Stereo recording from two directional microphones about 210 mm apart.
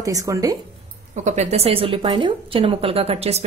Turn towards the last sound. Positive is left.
turn(degrees=-30)  # may be behind; listen again after turning